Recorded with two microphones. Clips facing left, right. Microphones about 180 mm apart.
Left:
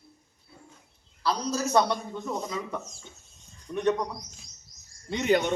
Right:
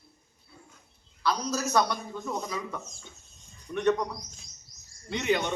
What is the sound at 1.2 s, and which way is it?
A man's voice, 30° left (ahead or behind).